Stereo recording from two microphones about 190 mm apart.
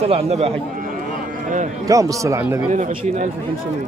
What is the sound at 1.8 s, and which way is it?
Speech, 15° right (ahead or behind).